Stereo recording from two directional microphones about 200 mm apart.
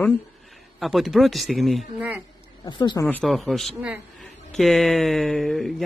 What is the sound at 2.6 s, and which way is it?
Speech, 25° left (ahead or behind).